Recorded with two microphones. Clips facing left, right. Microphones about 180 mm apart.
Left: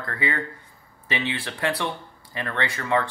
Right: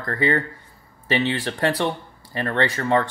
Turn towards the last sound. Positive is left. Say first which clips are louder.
# right 4 dB
turn(degrees=-40)  # may be behind; listen again after turning